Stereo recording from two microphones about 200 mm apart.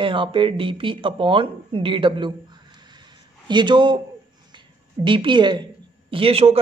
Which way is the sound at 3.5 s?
25° right (ahead or behind).